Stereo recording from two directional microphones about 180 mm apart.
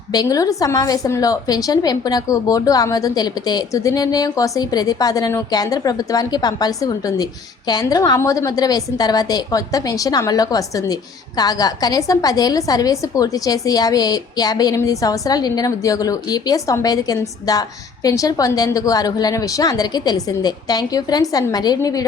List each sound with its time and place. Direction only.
0.1 s a woman's voice: 20° left (ahead or behind)